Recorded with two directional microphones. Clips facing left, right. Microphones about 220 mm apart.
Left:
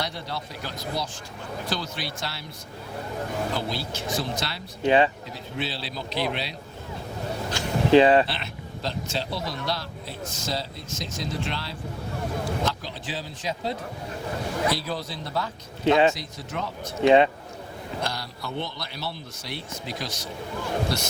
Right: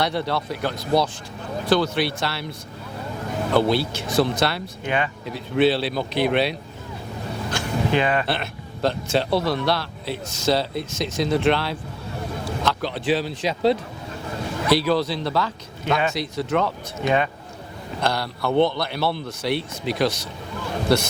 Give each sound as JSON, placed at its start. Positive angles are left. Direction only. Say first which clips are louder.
{"t": 0.0, "sound": "a man's voice", "louder": "right 9 dB", "side_deg": -65}
{"t": 3.5, "sound": "a man's voice", "louder": "right 10 dB", "side_deg": -65}
{"t": 4.8, "sound": "speech", "louder": "left 6 dB", "side_deg": 30}
{"t": 5.2, "sound": "a man's voice", "louder": "right 13 dB", "side_deg": -65}
{"t": 7.6, "sound": "a sound", "louder": "right 2 dB", "side_deg": -55}
{"t": 7.9, "sound": "speech", "louder": "left 7 dB", "side_deg": 30}
{"t": 8.3, "sound": "a man's voice", "louder": "right 7 dB", "side_deg": -55}
{"t": 15.8, "sound": "speech", "louder": "left 4 dB", "side_deg": 30}
{"t": 16.1, "sound": "speech", "louder": "right 11 dB", "side_deg": -70}
{"t": 17.0, "sound": "speech", "louder": "left 5 dB", "side_deg": 25}
{"t": 18.0, "sound": "a man's voice", "louder": "right 11 dB", "side_deg": -65}